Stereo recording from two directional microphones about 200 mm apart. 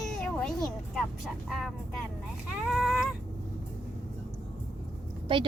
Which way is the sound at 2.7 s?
Centre (ahead or behind).